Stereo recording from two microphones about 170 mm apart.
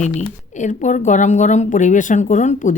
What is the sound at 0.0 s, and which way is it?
Speech, 45° left (ahead or behind).